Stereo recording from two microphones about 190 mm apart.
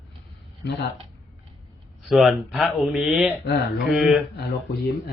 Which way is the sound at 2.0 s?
Centre (ahead or behind).